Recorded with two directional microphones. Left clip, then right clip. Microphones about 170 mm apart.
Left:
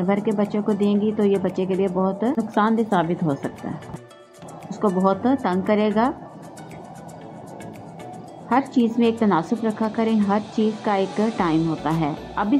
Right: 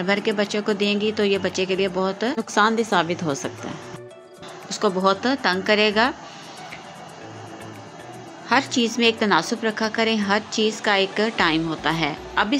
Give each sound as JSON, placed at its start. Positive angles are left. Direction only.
{"t": 0.0, "sound": "a woman's voice", "side_deg": -25}
{"t": 4.6, "sound": "a woman's voice", "side_deg": -15}
{"t": 8.5, "sound": "a woman's voice", "side_deg": -20}